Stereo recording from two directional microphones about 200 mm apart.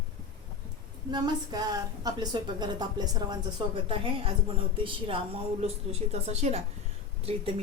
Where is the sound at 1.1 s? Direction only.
20° right (ahead or behind).